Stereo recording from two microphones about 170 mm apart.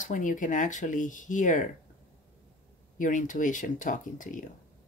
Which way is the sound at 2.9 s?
50° left (ahead or behind).